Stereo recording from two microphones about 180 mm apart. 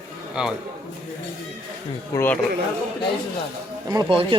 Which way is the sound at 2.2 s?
10° left (ahead or behind).